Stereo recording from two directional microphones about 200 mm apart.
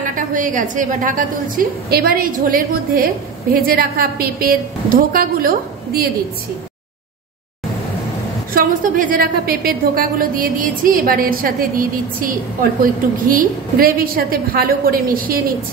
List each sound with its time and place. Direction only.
0.1 s a woman's voice: 40° right (ahead or behind)
8.5 s a woman's voice: 45° right (ahead or behind)